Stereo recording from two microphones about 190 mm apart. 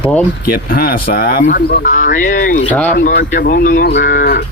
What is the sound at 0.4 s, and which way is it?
Speech, 50° left (ahead or behind).